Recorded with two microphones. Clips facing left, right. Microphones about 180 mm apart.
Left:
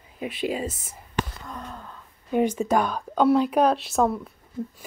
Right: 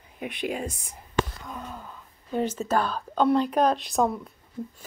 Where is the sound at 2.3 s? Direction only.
15° left (ahead or behind).